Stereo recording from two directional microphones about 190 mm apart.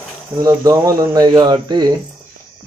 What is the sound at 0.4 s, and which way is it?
Speech, 20° right (ahead or behind).